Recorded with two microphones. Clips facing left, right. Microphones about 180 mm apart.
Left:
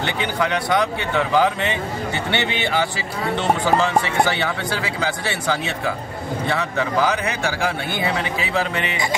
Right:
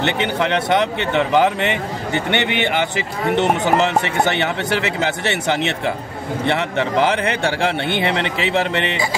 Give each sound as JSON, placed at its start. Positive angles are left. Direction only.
{"t": 0.0, "sound": "speech", "side_deg": -20}